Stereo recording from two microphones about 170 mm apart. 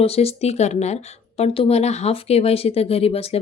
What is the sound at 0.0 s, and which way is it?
Speech, 35° left (ahead or behind).